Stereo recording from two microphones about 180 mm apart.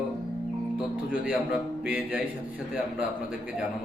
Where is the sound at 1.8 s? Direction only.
5° right (ahead or behind).